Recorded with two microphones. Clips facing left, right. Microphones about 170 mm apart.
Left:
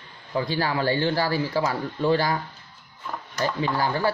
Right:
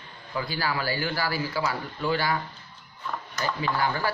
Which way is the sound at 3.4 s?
30° left (ahead or behind).